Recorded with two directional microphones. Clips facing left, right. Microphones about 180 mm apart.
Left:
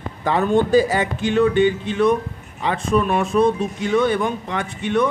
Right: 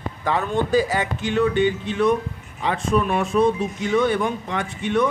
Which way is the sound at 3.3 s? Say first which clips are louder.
Left 1 dB; 35° left (ahead or behind).